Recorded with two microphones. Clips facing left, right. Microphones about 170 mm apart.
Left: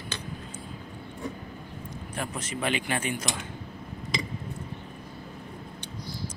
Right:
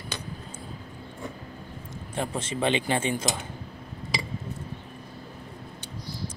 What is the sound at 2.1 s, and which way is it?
Speech, 25° right (ahead or behind).